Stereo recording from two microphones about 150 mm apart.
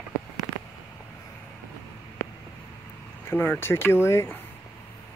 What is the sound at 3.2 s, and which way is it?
Speech, 15° left (ahead or behind).